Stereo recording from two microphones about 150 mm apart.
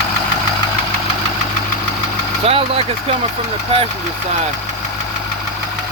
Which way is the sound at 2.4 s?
40° right (ahead or behind).